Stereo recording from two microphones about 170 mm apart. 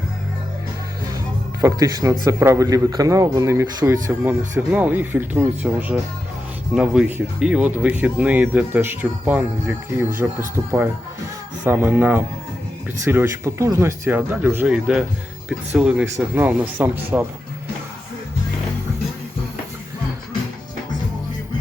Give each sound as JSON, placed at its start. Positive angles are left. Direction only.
{"t": 1.6, "sound": "a man's voice", "side_deg": -20}